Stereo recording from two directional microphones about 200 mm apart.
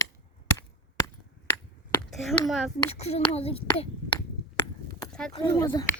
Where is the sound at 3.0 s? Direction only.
30° left (ahead or behind).